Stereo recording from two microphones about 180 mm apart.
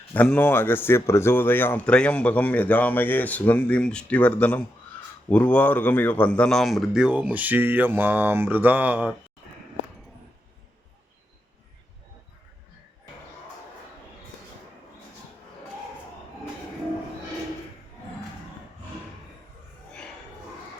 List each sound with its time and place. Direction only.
0.1 s a man's voice: 10° left (ahead or behind); by 9.1 s 10° right (ahead or behind)